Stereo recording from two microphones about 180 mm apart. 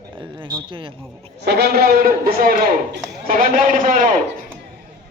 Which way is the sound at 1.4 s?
65° right (ahead or behind).